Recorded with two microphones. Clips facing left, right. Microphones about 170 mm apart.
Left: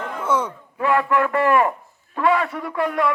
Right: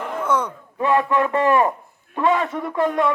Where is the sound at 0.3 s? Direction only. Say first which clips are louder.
Even; 10° left (ahead or behind).